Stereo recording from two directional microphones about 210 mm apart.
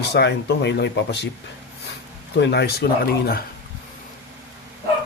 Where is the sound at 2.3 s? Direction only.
50° left (ahead or behind).